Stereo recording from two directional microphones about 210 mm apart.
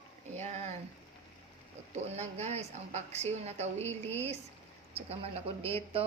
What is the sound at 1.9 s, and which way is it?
A woman's voice, 30° right (ahead or behind).